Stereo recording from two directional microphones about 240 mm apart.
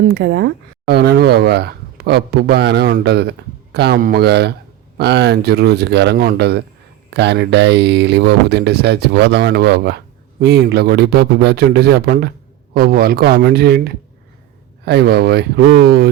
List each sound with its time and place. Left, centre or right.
0.1 s speech: right